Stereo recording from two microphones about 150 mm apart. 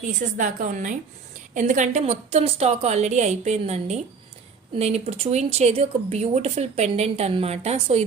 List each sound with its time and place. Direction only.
0.2 s a woman's voice: 60° right (ahead or behind)